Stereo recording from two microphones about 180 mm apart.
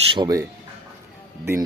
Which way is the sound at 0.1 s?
25° right (ahead or behind).